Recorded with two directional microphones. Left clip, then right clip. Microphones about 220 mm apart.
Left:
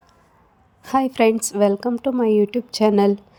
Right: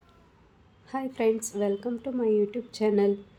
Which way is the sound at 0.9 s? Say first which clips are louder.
Left 10 dB; 40° left (ahead or behind).